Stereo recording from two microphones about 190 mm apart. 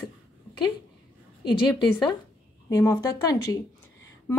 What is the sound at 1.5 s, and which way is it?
A woman's voice, 25° left (ahead or behind).